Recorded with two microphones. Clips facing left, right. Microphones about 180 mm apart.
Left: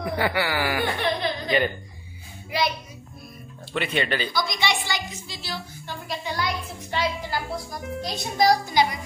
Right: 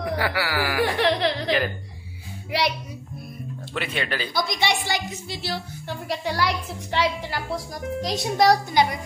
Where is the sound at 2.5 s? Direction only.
75° right (ahead or behind).